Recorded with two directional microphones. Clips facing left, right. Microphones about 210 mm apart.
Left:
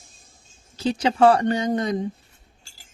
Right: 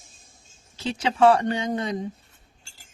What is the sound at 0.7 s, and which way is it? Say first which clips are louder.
Speech: left 5 dB; 40° left (ahead or behind).